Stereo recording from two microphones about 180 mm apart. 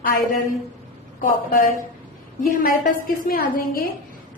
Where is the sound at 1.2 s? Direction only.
50° left (ahead or behind).